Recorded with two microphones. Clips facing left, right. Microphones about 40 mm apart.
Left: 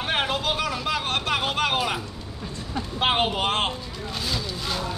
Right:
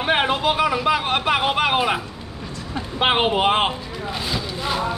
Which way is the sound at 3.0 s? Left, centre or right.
Right.